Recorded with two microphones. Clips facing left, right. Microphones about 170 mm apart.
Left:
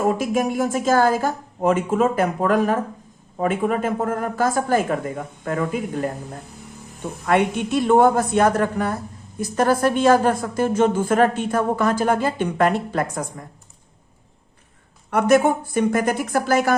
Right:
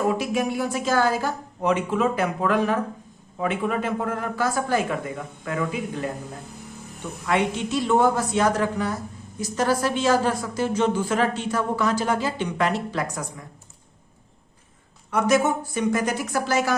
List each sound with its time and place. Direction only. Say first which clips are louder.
0.1 s a woman's voice: left 3 dB; 45° left (ahead or behind)
7.3 s a woman's voice: left 4 dB; 55° left (ahead or behind)
15.1 s a woman's voice: left 4 dB; 55° left (ahead or behind)